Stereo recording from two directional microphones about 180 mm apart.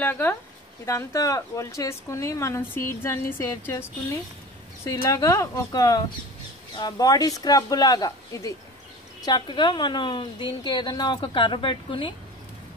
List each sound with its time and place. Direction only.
0.0 s speech: 10° left (ahead or behind)
4.8 s a woman's voice: 15° left (ahead or behind)